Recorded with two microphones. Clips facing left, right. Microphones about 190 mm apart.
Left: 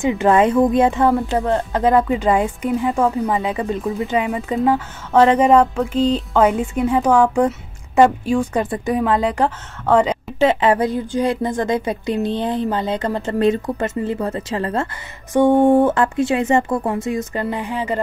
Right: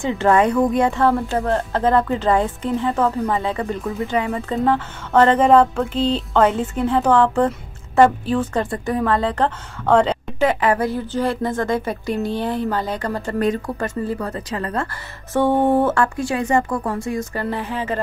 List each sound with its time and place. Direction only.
0.0 s speech: 20° left (ahead or behind)
10.4 s a woman's voice: 25° left (ahead or behind)
15.3 s a woman's voice: 15° left (ahead or behind)